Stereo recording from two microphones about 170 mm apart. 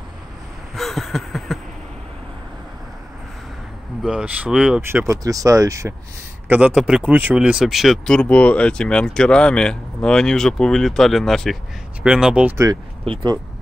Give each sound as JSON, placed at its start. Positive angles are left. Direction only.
{"t": 0.7, "sound": "a sound", "side_deg": 0}
{"t": 4.0, "sound": "speech", "side_deg": -5}
{"t": 5.0, "sound": "speech", "side_deg": -20}
{"t": 6.5, "sound": "speech", "side_deg": -5}
{"t": 13.0, "sound": "speech", "side_deg": -30}